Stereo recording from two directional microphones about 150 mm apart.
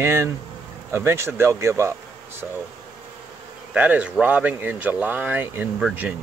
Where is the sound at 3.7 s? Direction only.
10° right (ahead or behind).